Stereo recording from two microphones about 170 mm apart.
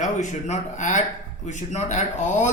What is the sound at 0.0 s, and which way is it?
A man's voice, 45° left (ahead or behind).